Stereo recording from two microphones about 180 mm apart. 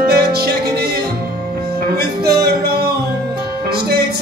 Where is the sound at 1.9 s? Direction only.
60° right (ahead or behind).